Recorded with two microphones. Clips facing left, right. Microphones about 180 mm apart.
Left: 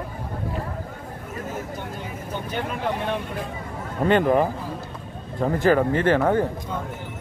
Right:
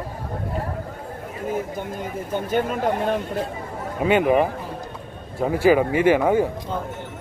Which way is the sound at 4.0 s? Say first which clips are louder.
Right 1 dB; 10° right (ahead or behind).